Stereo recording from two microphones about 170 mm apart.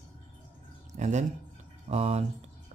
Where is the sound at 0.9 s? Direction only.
45° right (ahead or behind).